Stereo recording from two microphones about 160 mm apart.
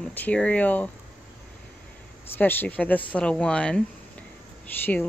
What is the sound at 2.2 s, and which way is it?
Speech, 15° left (ahead or behind).